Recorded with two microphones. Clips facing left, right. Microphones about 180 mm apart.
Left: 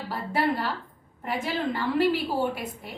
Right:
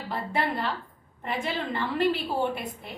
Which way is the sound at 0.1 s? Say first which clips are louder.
Left 2 dB; 5° left (ahead or behind).